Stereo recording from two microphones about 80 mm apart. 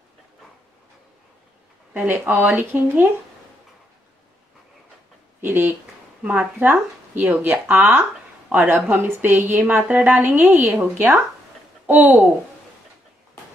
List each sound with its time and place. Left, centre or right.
2.0 s speech: right
5.4 s a woman's voice: right
11.8 s a sound: right